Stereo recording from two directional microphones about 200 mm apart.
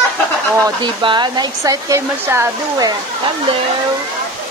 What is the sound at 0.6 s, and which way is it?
Speech, 25° right (ahead or behind).